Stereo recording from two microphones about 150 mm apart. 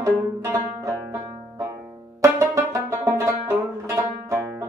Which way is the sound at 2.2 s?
20° right (ahead or behind).